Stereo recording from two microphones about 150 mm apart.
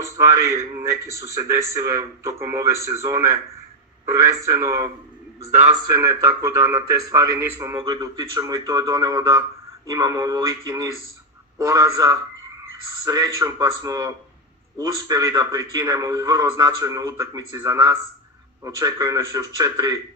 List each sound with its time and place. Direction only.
0.0 s a man's voice: 20° right (ahead or behind)